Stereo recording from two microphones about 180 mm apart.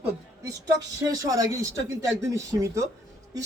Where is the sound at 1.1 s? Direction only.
20° right (ahead or behind).